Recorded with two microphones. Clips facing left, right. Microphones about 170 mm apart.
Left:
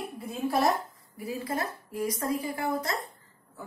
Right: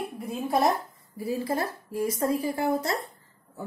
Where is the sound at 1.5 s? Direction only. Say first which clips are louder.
Right 3 dB; 30° right (ahead or behind).